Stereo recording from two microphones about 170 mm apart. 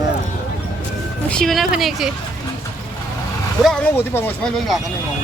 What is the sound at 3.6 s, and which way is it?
Speech, 5° left (ahead or behind).